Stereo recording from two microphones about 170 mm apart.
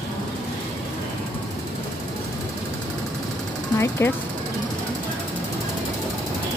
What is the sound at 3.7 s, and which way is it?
Speech, 15° left (ahead or behind).